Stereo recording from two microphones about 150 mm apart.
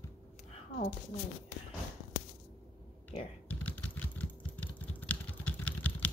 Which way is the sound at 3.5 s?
10° left (ahead or behind).